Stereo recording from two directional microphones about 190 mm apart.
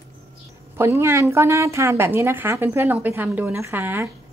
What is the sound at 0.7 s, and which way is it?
A woman's voice, 15° right (ahead or behind).